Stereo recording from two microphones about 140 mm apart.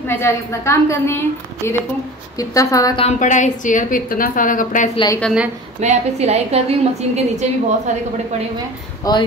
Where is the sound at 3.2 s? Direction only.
60° left (ahead or behind).